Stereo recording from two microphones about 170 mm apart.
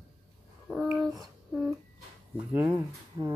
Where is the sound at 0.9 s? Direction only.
Centre (ahead or behind).